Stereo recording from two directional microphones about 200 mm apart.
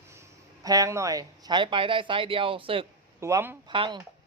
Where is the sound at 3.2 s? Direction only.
15° right (ahead or behind).